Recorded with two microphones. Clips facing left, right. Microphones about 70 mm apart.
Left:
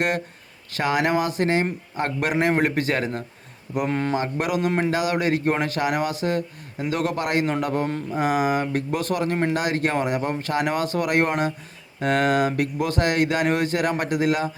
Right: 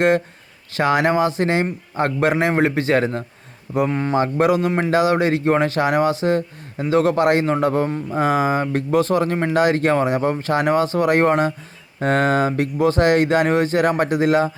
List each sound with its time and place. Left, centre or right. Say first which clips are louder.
0.8 s speech: right 5 dB; right
2.5 s speech: right 4 dB; right
3.8 s speech: right 2 dB; centre
4.1 s speech: right 7 dB; right